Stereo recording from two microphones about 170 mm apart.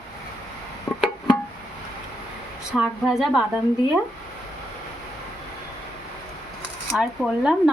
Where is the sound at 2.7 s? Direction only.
5° right (ahead or behind).